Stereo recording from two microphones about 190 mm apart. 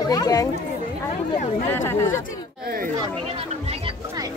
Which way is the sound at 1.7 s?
10° left (ahead or behind).